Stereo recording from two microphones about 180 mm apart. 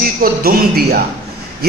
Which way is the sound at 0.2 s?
55° right (ahead or behind).